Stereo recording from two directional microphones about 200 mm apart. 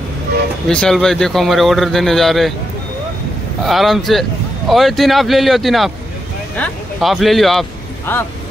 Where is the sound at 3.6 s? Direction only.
Centre (ahead or behind).